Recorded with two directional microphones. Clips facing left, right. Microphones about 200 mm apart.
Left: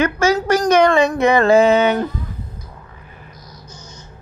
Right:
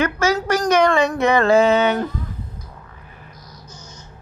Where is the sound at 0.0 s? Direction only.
25° left (ahead or behind).